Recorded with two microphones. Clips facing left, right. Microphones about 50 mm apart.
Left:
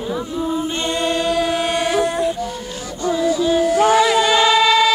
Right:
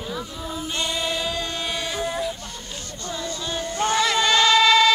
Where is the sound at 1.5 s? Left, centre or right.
Left.